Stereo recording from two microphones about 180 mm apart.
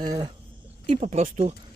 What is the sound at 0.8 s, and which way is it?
Speech, 40° right (ahead or behind).